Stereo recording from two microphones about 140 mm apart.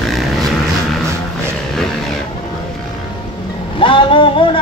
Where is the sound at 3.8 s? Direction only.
35° left (ahead or behind).